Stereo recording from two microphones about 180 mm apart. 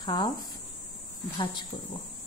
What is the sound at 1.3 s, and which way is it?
Speech, 25° left (ahead or behind).